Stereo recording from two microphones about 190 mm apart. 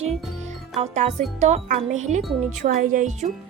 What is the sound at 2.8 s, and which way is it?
Music, 45° right (ahead or behind).